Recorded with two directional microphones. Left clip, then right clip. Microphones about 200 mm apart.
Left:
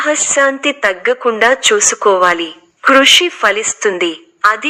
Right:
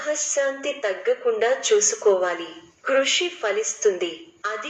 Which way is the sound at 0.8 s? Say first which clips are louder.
Left 8 dB; 45° left (ahead or behind).